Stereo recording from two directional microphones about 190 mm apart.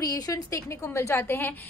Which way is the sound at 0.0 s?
20° left (ahead or behind).